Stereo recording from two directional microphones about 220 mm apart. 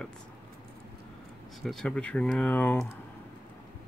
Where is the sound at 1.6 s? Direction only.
5° left (ahead or behind).